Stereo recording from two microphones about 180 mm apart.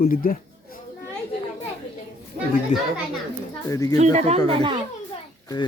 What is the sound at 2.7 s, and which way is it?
Speech, 40° left (ahead or behind).